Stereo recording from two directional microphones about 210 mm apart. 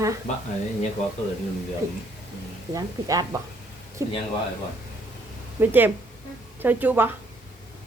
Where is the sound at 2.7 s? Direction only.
15° right (ahead or behind).